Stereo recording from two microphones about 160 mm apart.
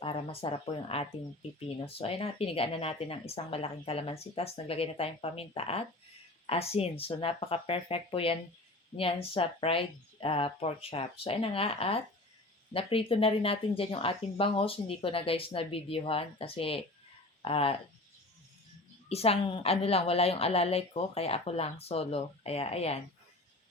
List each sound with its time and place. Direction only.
0.0 s speech: 35° left (ahead or behind)
19.0 s speech: 40° left (ahead or behind)